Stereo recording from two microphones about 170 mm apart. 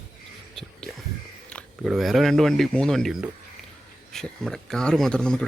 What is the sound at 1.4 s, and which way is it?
Speech, 5° left (ahead or behind).